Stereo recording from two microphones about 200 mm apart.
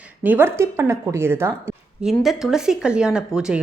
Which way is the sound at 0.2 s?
10° right (ahead or behind).